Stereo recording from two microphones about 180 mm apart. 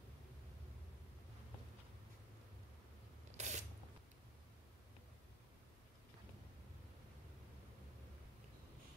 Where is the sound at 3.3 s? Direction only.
40° right (ahead or behind).